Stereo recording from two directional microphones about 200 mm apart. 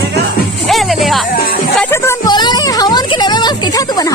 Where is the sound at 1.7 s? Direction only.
10° left (ahead or behind).